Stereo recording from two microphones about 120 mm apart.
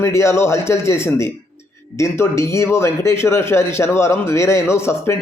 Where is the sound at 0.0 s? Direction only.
25° left (ahead or behind).